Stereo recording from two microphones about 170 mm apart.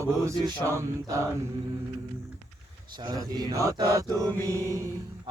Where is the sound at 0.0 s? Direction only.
20° right (ahead or behind).